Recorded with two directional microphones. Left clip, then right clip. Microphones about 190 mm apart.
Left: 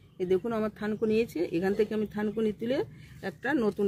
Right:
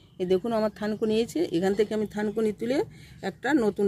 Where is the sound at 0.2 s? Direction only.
25° right (ahead or behind).